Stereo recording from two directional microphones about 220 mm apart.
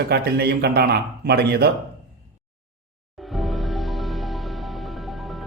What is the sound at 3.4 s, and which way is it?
Music, centre (ahead or behind).